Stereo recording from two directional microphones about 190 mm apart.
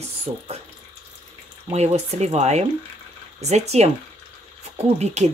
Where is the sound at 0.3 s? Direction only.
35° right (ahead or behind).